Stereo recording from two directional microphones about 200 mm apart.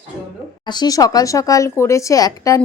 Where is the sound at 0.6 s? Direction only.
20° left (ahead or behind).